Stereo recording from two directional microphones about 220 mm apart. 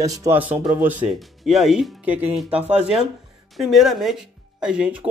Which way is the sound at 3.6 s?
Centre (ahead or behind).